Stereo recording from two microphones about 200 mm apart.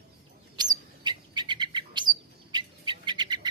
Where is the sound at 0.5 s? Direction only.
20° right (ahead or behind).